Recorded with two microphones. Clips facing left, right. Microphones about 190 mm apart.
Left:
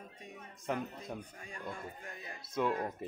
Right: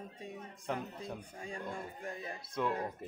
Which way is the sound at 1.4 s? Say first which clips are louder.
Right 3 dB; 30° right (ahead or behind).